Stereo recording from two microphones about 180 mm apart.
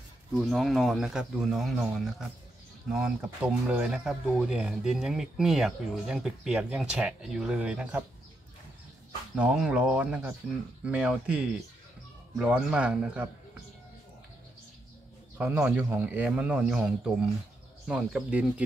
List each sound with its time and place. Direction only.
0.3 s speech: centre (ahead or behind)
9.3 s speech: centre (ahead or behind)
15.3 s speech: 5° right (ahead or behind)